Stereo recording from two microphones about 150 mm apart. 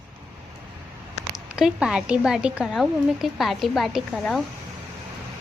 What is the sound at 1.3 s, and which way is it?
A woman's voice, 5° right (ahead or behind).